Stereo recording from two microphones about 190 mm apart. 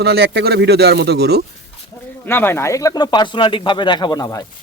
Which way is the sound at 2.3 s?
10° left (ahead or behind).